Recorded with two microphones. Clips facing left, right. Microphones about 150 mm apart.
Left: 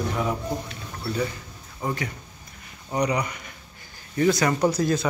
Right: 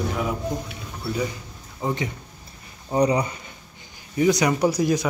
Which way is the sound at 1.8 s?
20° right (ahead or behind).